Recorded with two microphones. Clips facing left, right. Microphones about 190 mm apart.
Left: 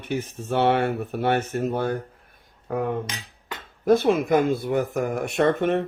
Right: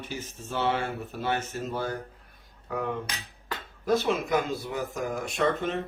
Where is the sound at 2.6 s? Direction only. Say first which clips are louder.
Left 5 dB; 50° left (ahead or behind).